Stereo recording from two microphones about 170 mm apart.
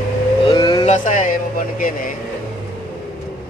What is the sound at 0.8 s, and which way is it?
Speech, 45° left (ahead or behind).